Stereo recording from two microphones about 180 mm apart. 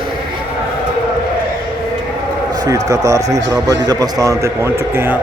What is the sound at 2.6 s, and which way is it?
A man's voice, 20° right (ahead or behind).